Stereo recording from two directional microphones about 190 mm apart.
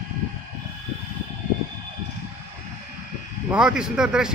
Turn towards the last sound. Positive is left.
turn(degrees=-5)  # may be behind; listen again after turning